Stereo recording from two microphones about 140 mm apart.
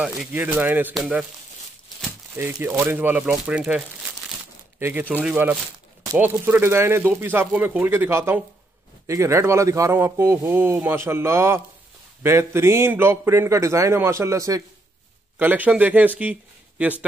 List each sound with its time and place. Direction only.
0.3 s speech: 10° right (ahead or behind)
2.3 s speech: 15° right (ahead or behind)
15.3 s speech: 10° right (ahead or behind)
16.2 s a sound: 10° right (ahead or behind)